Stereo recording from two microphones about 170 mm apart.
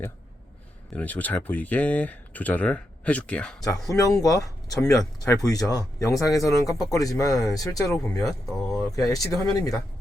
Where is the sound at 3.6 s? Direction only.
20° left (ahead or behind).